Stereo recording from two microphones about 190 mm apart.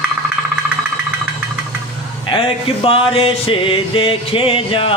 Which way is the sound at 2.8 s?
30° left (ahead or behind).